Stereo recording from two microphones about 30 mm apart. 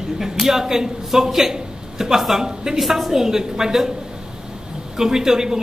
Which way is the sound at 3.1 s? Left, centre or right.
Centre.